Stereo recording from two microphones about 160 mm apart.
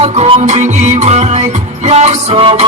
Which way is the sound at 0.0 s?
40° right (ahead or behind).